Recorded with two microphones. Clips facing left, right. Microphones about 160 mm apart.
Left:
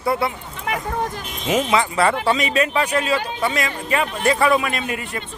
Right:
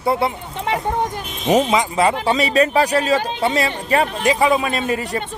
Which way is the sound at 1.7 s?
15° right (ahead or behind).